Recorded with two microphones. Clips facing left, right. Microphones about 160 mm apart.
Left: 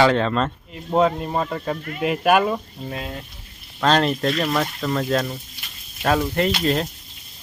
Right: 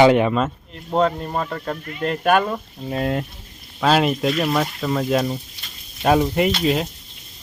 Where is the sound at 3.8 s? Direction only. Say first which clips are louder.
Right 1 dB; 5° right (ahead or behind).